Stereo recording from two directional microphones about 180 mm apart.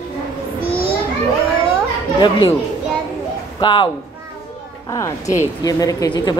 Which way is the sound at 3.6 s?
25° left (ahead or behind).